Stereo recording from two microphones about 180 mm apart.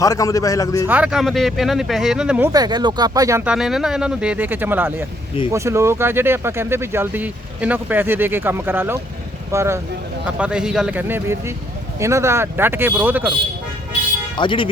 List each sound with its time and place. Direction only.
0.0 s a man's voice: 20° left (ahead or behind)
0.9 s speech: 5° right (ahead or behind)
2.5 s speech: 20° right (ahead or behind)
14.3 s a man's voice: 25° left (ahead or behind)